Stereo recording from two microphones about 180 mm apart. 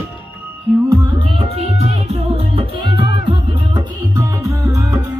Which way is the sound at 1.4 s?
35° right (ahead or behind).